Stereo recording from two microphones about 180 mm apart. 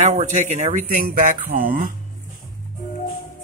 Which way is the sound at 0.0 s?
40° right (ahead or behind).